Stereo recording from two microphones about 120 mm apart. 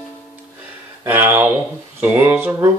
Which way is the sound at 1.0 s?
15° right (ahead or behind).